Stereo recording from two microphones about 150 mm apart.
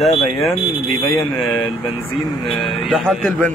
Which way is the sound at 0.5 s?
80° right.